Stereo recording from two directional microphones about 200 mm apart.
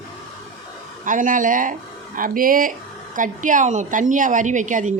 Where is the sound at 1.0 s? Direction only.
40° right (ahead or behind).